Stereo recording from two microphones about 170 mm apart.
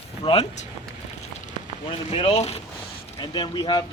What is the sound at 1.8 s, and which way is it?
Speech, 35° left (ahead or behind).